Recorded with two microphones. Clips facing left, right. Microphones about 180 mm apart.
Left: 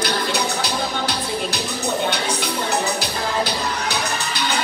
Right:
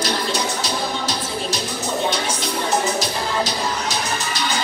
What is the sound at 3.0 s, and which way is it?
Music, 65° left (ahead or behind).